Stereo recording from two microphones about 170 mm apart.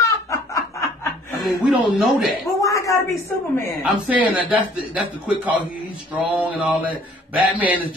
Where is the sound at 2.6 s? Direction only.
20° left (ahead or behind).